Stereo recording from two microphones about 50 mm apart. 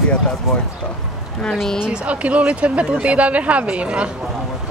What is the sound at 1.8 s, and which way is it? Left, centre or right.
Speech, right.